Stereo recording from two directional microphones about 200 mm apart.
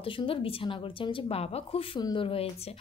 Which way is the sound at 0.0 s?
25° left (ahead or behind).